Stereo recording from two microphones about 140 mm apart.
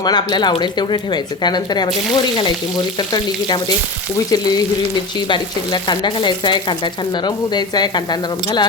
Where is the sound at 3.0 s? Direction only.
30° left (ahead or behind).